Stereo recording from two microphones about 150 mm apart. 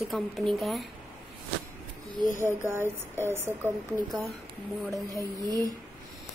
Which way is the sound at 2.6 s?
15° right (ahead or behind).